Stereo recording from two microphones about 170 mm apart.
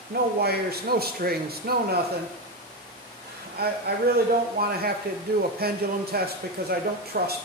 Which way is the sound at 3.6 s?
65° right (ahead or behind).